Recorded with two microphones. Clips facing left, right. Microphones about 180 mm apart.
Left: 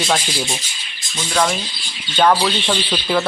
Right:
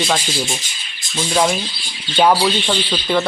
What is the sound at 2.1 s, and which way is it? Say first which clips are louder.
Speech: right 1 dB; 10° right (ahead or behind).